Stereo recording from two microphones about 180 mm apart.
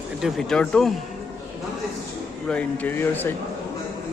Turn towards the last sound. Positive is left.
turn(degrees=10)  # may be behind; listen again after turning